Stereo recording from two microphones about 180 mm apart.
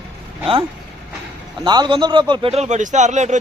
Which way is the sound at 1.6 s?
25° right (ahead or behind).